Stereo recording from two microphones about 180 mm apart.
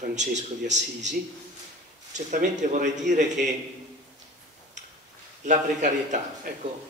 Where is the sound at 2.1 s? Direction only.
40° right (ahead or behind).